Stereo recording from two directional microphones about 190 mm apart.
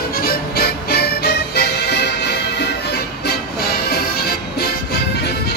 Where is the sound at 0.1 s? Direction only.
50° left (ahead or behind).